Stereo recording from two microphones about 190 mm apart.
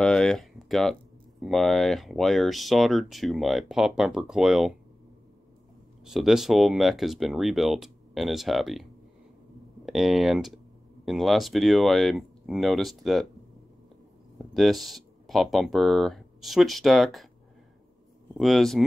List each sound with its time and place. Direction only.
0.0 s a sound: 5° left (ahead or behind)
1.4 s speech: centre (ahead or behind)
6.0 s speech: centre (ahead or behind)
9.8 s speech: centre (ahead or behind)
14.4 s speech: centre (ahead or behind)
18.4 s speech: centre (ahead or behind)